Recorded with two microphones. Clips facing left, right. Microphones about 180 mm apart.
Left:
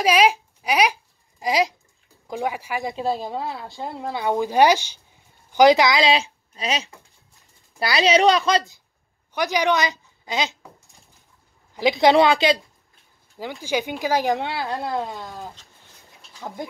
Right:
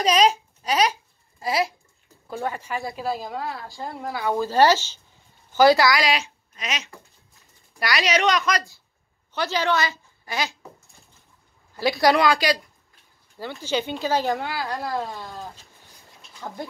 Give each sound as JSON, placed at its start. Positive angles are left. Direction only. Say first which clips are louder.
{"t": 0.0, "sound": "a child's voice", "louder": "left 1 dB", "side_deg": 10}
{"t": 11.7, "sound": "a woman's voice", "louder": "left 3 dB", "side_deg": 20}
{"t": 13.4, "sound": "speech", "louder": "left 1 dB", "side_deg": 15}